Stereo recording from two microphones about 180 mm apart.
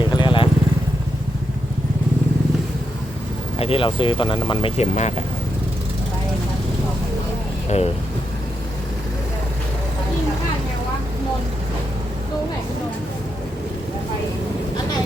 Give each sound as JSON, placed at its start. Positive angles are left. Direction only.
{"t": 0.1, "sound": "vehicle", "side_deg": 25}
{"t": 3.6, "sound": "speech", "side_deg": 30}
{"t": 7.7, "sound": "speech", "side_deg": 35}